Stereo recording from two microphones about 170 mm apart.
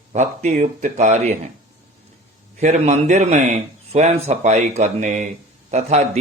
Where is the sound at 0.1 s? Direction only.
45° right (ahead or behind).